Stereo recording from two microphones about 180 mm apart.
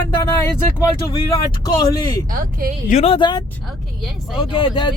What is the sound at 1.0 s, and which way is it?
Speech, 20° left (ahead or behind).